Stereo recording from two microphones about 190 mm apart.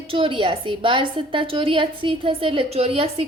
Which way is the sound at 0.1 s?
30° right (ahead or behind).